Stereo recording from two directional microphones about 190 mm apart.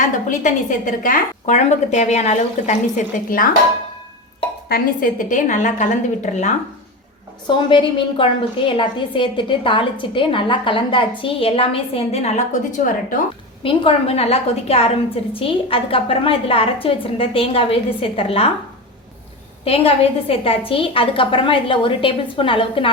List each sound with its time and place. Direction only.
0.0 s a woman's voice: 40° left (ahead or behind)
4.7 s a woman's voice: 45° left (ahead or behind)
7.4 s a woman's voice: 25° left (ahead or behind)
12.7 s a woman's voice: 45° left (ahead or behind)
13.6 s a woman's voice: 30° left (ahead or behind)
19.6 s a woman's voice: 30° left (ahead or behind)